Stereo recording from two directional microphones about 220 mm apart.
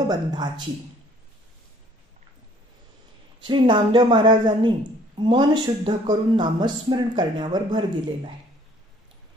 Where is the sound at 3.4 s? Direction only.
20° right (ahead or behind).